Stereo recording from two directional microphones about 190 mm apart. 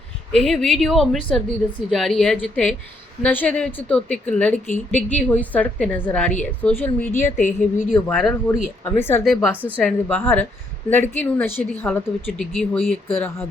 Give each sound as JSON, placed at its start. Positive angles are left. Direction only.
{"t": 0.3, "sound": "speech", "side_deg": 0}
{"t": 7.3, "sound": "a woman's voice", "side_deg": 45}
{"t": 8.0, "sound": "speech", "side_deg": 5}
{"t": 9.2, "sound": "speech", "side_deg": -5}
{"t": 9.7, "sound": "speech", "side_deg": 10}